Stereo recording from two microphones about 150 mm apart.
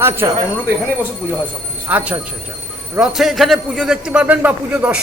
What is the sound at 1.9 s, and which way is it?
A man's voice, 10° right (ahead or behind).